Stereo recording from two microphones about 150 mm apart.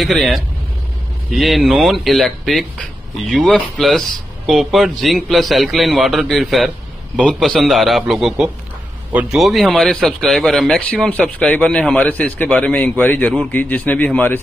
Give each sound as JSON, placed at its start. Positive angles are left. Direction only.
{"t": 0.0, "sound": "speech", "side_deg": 0}